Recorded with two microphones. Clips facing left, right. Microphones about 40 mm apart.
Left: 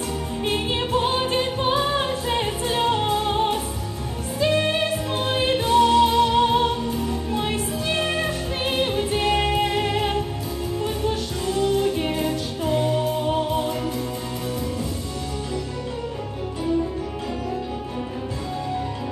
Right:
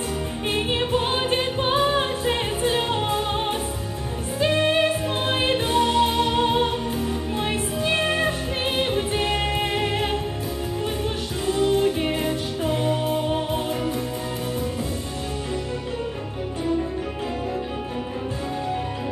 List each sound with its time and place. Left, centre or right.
0.5 s music: right
4.4 s music: right